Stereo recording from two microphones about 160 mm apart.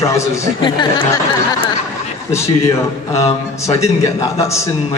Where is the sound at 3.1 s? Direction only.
20° left (ahead or behind).